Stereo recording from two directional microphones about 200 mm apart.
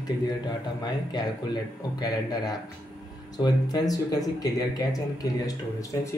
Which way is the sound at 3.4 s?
20° left (ahead or behind).